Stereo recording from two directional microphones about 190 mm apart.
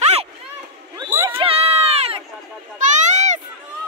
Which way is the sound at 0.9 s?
20° right (ahead or behind).